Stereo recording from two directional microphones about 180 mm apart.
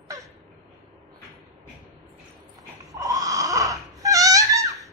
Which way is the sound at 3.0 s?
20° right (ahead or behind).